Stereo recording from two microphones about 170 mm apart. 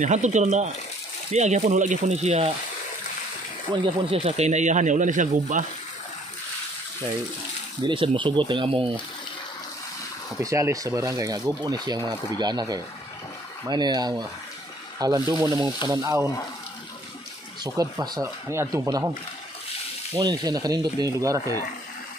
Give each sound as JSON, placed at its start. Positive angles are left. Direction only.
{"t": 0.0, "sound": "speech", "side_deg": -45}
{"t": 3.7, "sound": "speech", "side_deg": -30}
{"t": 4.1, "sound": "speech", "side_deg": -40}
{"t": 7.8, "sound": "speech", "side_deg": -30}
{"t": 10.4, "sound": "speech", "side_deg": -20}
{"t": 17.6, "sound": "speech", "side_deg": -20}
{"t": 20.2, "sound": "speech", "side_deg": -25}